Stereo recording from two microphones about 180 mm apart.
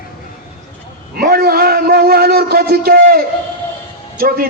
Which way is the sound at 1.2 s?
55° right (ahead or behind).